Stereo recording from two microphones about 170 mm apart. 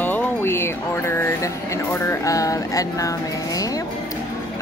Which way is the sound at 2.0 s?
20° left (ahead or behind).